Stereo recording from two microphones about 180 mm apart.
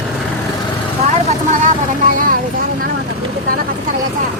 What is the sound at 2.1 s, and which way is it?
Vehicle, 50° right (ahead or behind).